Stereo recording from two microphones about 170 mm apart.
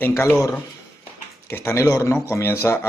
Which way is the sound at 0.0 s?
15° left (ahead or behind).